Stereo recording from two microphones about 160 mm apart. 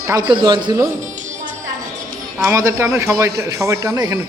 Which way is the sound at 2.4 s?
15° right (ahead or behind).